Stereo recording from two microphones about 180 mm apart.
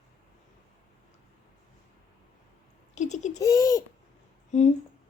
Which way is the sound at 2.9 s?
40° left (ahead or behind).